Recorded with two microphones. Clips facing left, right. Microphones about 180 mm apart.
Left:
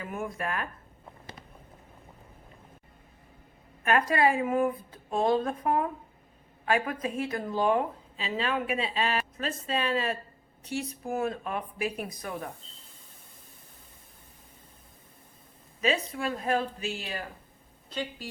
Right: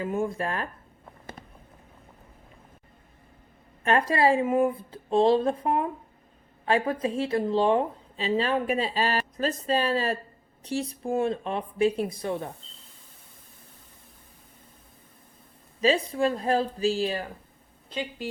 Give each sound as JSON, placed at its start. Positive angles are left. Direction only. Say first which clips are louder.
{"t": 0.0, "sound": "a woman's voice", "louder": "right 6 dB", "side_deg": -30}
{"t": 4.1, "sound": "a woman's voice", "louder": "right 5 dB", "side_deg": -30}
{"t": 15.8, "sound": "a woman's voice", "louder": "right 6 dB", "side_deg": -30}